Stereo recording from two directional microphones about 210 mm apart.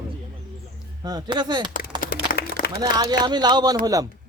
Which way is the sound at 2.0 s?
45° left (ahead or behind).